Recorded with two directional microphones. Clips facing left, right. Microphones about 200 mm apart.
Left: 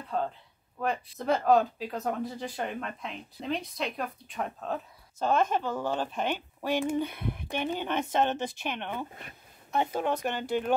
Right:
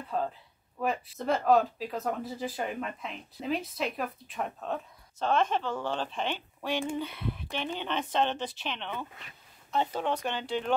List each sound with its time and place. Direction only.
0.1 s speech: centre (ahead or behind)
8.3 s speech: 45° left (ahead or behind)
8.6 s speech: 10° left (ahead or behind)